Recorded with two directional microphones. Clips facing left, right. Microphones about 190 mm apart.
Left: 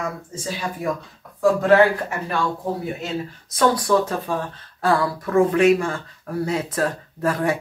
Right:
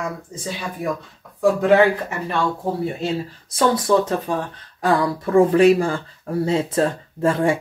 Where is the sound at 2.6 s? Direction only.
30° right (ahead or behind).